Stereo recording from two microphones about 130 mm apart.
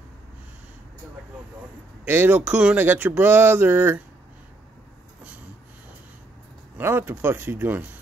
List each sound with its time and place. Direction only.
2.0 s speech: 15° right (ahead or behind)
6.8 s speech: 15° right (ahead or behind)